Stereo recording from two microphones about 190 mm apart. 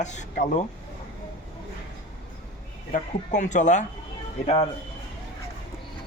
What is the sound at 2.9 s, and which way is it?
Speech, 40° left (ahead or behind).